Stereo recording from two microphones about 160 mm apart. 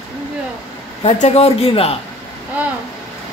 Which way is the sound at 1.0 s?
40° left (ahead or behind).